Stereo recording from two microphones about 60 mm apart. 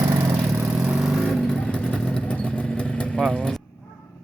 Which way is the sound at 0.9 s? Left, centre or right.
Centre.